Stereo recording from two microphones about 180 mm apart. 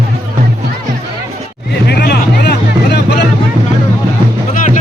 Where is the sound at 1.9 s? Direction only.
60° left (ahead or behind).